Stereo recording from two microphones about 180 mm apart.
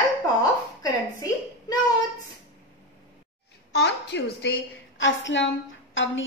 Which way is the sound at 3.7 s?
70° left (ahead or behind).